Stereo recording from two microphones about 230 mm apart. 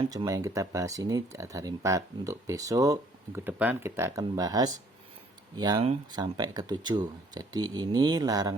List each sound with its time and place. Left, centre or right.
0.1 s speech: centre